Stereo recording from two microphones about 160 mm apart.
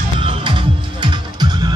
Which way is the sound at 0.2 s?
30° right (ahead or behind).